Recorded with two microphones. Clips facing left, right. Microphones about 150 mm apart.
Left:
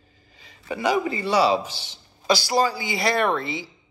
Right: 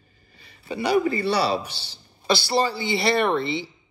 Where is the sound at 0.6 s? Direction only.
20° left (ahead or behind).